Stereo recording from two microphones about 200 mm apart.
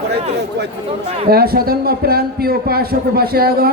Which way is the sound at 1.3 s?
50° right (ahead or behind).